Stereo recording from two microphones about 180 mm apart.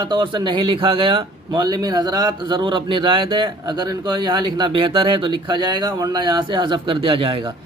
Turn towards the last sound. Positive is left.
turn(degrees=-30)  # may be behind; listen again after turning